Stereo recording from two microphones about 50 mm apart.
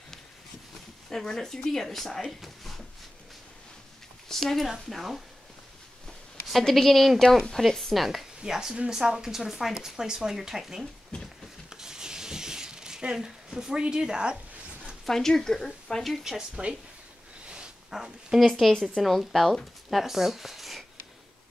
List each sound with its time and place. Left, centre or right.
1.1 s speech: centre
2.4 s a sound: centre
4.3 s speech: centre
6.4 s speech: centre
11.7 s a sound: centre
15.0 s speech: centre
16.0 s speech: centre
16.3 s speech: centre
17.9 s speech: centre
18.4 s speech: centre
20.0 s speech: centre